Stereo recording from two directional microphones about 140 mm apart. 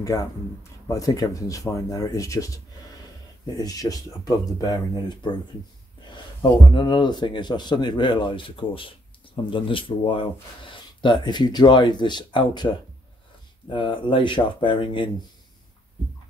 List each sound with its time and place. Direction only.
0.0 s speech: 25° left (ahead or behind)
6.7 s speech: 35° left (ahead or behind)